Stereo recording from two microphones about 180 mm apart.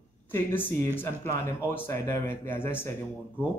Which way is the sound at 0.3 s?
10° left (ahead or behind).